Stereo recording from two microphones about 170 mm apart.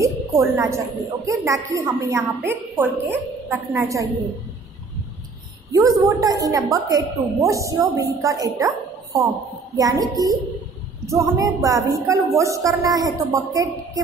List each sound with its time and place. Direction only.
0.0 s a woman's voice: 15° right (ahead or behind)
5.7 s a woman's voice: 20° right (ahead or behind)